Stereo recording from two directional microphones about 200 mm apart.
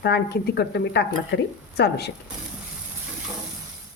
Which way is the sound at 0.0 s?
55° left (ahead or behind).